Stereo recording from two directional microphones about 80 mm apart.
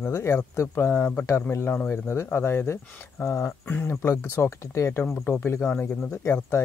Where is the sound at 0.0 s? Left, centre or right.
Left.